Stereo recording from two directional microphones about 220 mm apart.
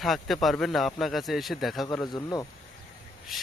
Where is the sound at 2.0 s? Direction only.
20° left (ahead or behind).